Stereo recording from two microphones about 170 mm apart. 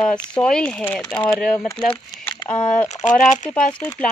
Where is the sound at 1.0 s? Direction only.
25° left (ahead or behind).